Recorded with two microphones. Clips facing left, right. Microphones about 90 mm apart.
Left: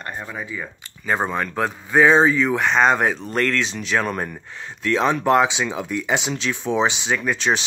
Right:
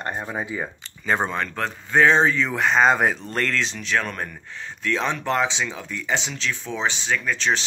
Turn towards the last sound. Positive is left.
turn(degrees=15)  # may be behind; listen again after turning